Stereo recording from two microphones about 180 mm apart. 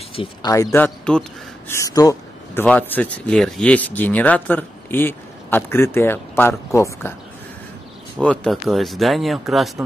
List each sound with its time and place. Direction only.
0.1 s speech: 30° left (ahead or behind)
0.5 s speech: 15° left (ahead or behind)
1.7 s speech: 20° left (ahead or behind)
8.2 s speech: 5° left (ahead or behind)